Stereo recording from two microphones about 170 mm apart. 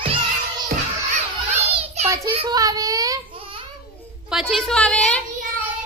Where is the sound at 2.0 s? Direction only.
20° right (ahead or behind).